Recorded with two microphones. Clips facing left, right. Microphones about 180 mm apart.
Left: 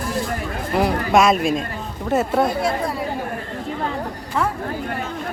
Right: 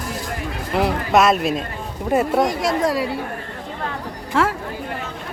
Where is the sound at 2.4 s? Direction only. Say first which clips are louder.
Right 2 dB; 90° right.